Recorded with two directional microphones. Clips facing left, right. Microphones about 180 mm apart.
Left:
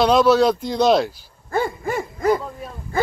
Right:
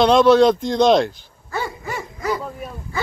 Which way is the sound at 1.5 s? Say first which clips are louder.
Left 5 dB; 50° left (ahead or behind).